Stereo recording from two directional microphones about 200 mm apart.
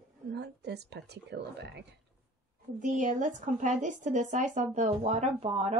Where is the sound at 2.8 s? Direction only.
40° right (ahead or behind).